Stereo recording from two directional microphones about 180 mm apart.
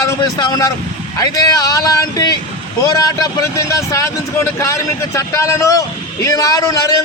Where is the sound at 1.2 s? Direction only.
20° left (ahead or behind).